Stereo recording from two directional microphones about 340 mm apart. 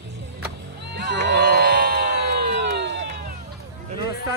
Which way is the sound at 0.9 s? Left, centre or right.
Right.